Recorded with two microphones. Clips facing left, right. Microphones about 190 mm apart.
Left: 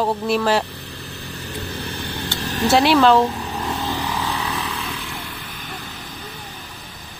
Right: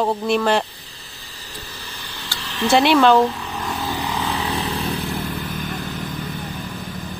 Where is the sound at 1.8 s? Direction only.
55° left (ahead or behind).